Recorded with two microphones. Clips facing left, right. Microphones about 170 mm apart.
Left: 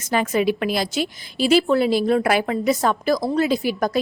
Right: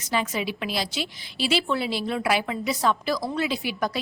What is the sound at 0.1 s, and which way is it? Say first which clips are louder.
A woman's voice: left 7 dB; 50° left (ahead or behind).